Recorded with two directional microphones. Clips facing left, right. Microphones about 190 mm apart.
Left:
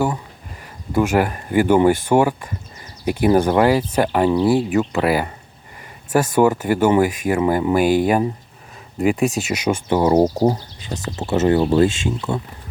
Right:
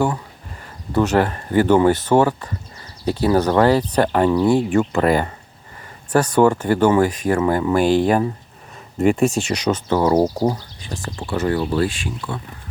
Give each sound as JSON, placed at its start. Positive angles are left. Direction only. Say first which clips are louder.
{"t": 0.9, "sound": "speech", "louder": "even", "side_deg": 10}